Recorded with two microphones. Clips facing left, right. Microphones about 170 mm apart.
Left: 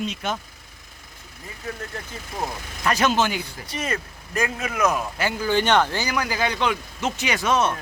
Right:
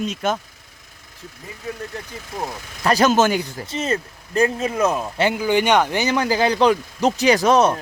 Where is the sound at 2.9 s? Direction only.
40° right (ahead or behind).